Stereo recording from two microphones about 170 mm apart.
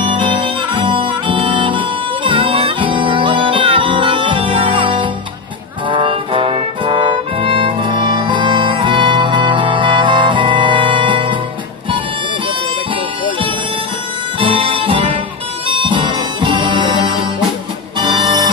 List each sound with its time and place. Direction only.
0.0 s music: 30° right (ahead or behind)
14.4 s music: 30° right (ahead or behind)